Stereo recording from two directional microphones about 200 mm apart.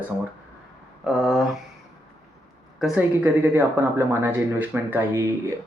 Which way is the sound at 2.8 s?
5° right (ahead or behind).